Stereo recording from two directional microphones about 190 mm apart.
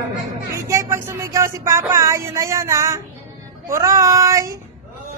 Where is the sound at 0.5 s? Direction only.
15° right (ahead or behind).